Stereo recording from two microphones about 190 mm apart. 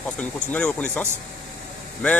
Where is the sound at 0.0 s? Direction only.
5° left (ahead or behind).